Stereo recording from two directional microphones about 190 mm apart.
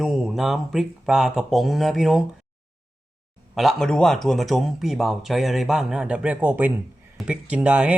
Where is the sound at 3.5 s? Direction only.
Centre (ahead or behind).